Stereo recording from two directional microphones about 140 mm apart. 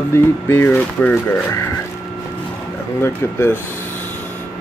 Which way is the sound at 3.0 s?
15° left (ahead or behind).